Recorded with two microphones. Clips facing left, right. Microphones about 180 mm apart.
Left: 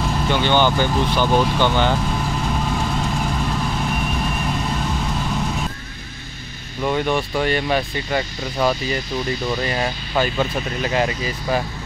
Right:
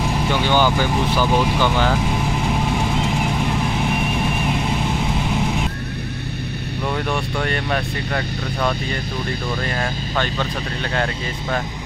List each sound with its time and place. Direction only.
0.0 s speech: 10° right (ahead or behind)
2.0 s vehicle: 10° right (ahead or behind)
6.8 s speech: 5° left (ahead or behind)